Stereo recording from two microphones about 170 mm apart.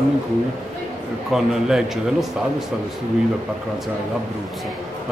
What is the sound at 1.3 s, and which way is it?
A man's voice, 5° right (ahead or behind).